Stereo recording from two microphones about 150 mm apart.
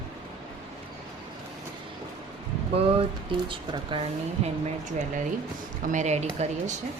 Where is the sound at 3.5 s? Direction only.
35° right (ahead or behind).